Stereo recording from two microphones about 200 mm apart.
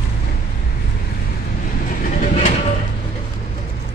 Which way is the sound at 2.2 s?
30° left (ahead or behind).